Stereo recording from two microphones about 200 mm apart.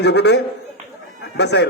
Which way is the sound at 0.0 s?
55° left (ahead or behind).